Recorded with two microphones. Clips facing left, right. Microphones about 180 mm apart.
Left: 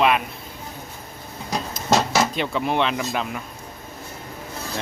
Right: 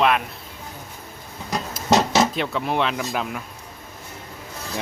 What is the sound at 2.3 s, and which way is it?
Speech, centre (ahead or behind).